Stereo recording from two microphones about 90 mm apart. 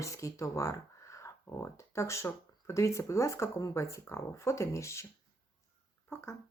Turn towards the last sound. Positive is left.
turn(degrees=30)  # may be behind; listen again after turning